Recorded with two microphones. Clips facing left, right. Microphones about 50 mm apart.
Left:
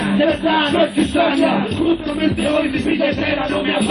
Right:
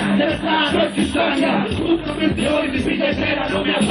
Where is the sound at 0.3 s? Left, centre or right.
Left.